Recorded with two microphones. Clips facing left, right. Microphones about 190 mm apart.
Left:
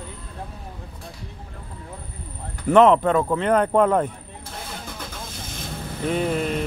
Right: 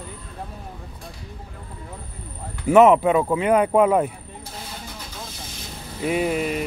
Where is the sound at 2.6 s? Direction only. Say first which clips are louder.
Right 1 dB; 10° right (ahead or behind).